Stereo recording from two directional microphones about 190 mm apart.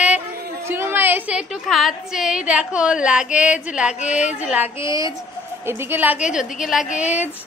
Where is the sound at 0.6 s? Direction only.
10° right (ahead or behind).